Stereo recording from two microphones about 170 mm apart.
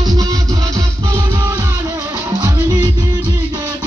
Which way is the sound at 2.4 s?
20° right (ahead or behind).